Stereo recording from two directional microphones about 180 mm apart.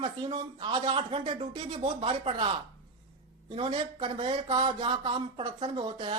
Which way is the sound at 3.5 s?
30° right (ahead or behind).